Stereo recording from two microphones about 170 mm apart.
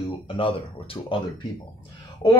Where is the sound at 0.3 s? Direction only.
30° left (ahead or behind).